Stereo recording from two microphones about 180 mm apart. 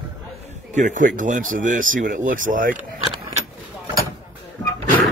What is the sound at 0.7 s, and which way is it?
Speech, 45° right (ahead or behind).